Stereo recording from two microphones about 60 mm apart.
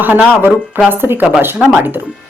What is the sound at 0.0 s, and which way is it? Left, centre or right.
A woman's voice, right.